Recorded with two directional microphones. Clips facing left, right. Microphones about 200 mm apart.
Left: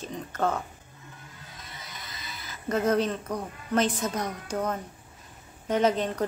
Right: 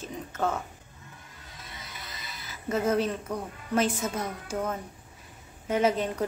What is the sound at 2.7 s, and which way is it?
A woman's voice, 5° right (ahead or behind).